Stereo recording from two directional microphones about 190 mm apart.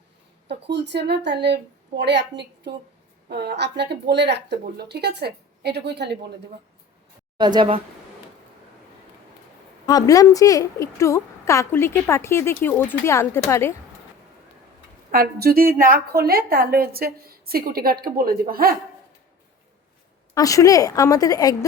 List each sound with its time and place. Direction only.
0.4 s speech: 65° right (ahead or behind)
7.3 s speech: 25° right (ahead or behind)
9.8 s a woman's voice: 20° left (ahead or behind)
15.1 s a woman's voice: 50° right (ahead or behind)
20.3 s a woman's voice: 20° left (ahead or behind)